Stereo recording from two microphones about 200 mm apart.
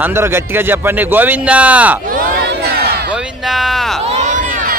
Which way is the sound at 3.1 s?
Centre (ahead or behind).